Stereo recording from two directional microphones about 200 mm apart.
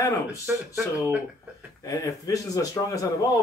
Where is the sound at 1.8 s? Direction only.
15° left (ahead or behind).